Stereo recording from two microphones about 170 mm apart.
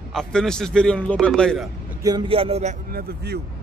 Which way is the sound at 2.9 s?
70° right (ahead or behind).